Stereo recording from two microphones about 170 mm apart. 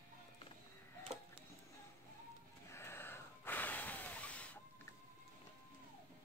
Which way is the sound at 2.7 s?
15° left (ahead or behind).